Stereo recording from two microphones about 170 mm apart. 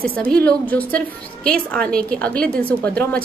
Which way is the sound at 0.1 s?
10° left (ahead or behind).